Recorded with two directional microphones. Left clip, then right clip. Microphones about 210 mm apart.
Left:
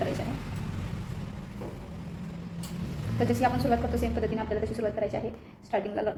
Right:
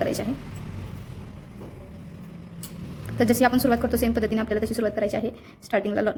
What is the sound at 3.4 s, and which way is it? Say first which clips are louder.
A woman's voice: right 4 dB; 50° right (ahead or behind).